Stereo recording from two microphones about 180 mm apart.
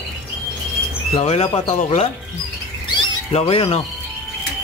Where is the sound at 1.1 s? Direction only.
35° left (ahead or behind).